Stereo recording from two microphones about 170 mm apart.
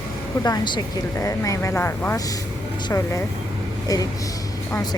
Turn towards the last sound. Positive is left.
turn(degrees=25)  # may be behind; listen again after turning